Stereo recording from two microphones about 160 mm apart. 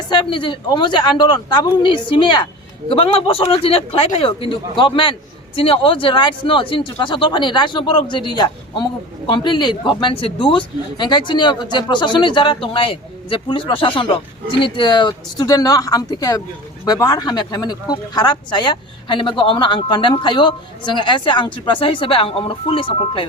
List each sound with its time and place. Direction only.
0.1 s a man's voice: 30° left (ahead or behind)